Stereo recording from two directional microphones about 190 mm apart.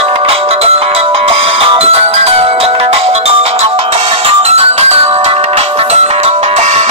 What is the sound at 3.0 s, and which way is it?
Music, 35° right (ahead or behind).